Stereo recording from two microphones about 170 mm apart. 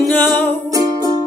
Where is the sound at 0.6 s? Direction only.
20° right (ahead or behind).